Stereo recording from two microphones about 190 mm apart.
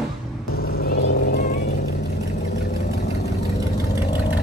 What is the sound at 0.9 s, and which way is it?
Vehicle, 65° left (ahead or behind).